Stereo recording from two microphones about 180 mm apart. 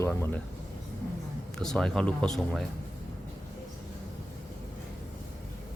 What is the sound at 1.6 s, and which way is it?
Speech, 5° left (ahead or behind).